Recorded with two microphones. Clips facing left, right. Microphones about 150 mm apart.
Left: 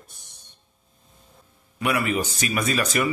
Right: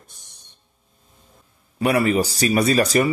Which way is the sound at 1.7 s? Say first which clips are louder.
Right 6 dB; 35° right (ahead or behind).